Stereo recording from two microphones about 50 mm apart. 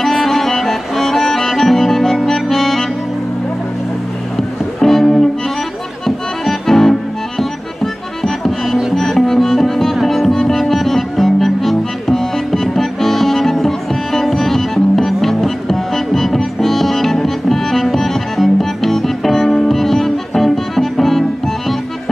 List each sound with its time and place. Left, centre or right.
0.0 s accordion: centre
4.4 s music: centre
6.0 s accordion: centre
8.9 s music: centre